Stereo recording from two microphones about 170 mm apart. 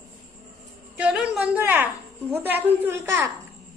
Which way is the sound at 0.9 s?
5° right (ahead or behind).